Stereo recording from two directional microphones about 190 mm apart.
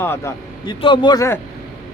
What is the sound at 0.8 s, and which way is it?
Speech, 25° left (ahead or behind).